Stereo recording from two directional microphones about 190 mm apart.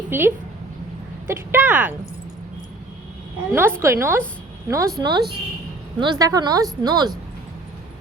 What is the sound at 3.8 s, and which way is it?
Speech, 15° right (ahead or behind).